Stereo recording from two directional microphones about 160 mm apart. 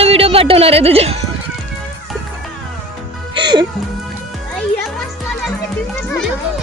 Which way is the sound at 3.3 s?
30° right (ahead or behind).